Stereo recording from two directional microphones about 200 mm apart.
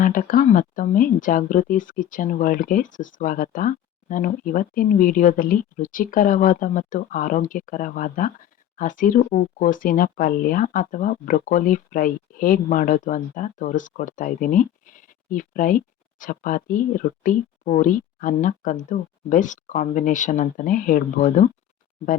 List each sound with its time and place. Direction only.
0.0 s speech: 45° left (ahead or behind)